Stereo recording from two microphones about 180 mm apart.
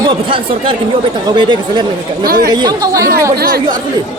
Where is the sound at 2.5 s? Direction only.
20° right (ahead or behind).